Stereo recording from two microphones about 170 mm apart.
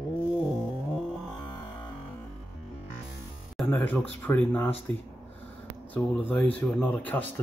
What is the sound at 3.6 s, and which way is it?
Speech, 10° left (ahead or behind).